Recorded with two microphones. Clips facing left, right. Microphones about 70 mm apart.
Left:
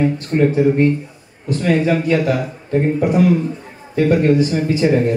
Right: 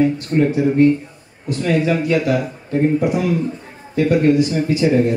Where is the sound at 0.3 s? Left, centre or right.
Left.